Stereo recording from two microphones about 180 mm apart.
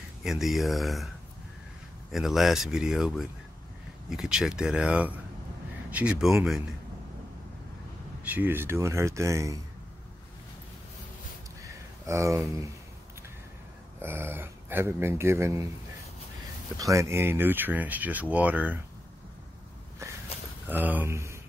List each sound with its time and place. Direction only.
0.2 s speech: centre (ahead or behind)
2.1 s speech: centre (ahead or behind)
8.2 s speech: 10° right (ahead or behind)
11.6 s a sound: 15° right (ahead or behind)
14.0 s speech: 10° right (ahead or behind)
16.7 s speech: 15° right (ahead or behind)
20.3 s a sound: 35° left (ahead or behind)
20.6 s speech: 10° right (ahead or behind)